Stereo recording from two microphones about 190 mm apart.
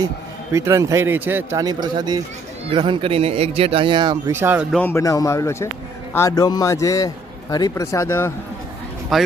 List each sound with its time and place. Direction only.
0.5 s speech: 15° right (ahead or behind)
4.7 s speech: 10° left (ahead or behind)
9.1 s a man's voice: centre (ahead or behind)